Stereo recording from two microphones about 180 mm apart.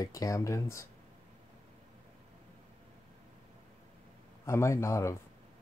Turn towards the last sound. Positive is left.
turn(degrees=15)  # may be behind; listen again after turning